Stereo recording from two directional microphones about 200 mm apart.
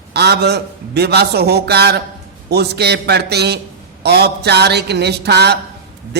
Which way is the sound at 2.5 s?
55° right (ahead or behind).